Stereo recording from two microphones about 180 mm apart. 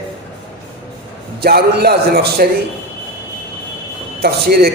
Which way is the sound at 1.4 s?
60° right (ahead or behind).